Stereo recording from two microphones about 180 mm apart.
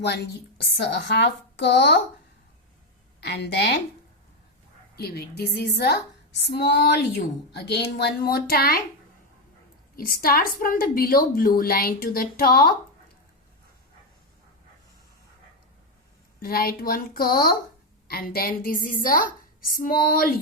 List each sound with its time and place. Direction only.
0.8 s speech: 70° left (ahead or behind)
3.2 s speech: 65° left (ahead or behind)
4.9 s a woman's voice: 60° left (ahead or behind)
9.9 s a woman's voice: 55° left (ahead or behind)
16.4 s a woman's voice: 55° left (ahead or behind)